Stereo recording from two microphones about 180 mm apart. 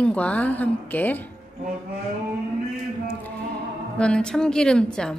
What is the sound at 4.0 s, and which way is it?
Speech, 5° left (ahead or behind).